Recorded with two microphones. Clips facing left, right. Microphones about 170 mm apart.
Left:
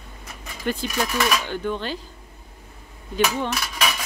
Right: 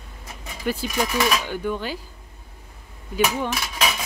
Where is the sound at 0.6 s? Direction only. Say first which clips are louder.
Right 1 dB; 10° right (ahead or behind).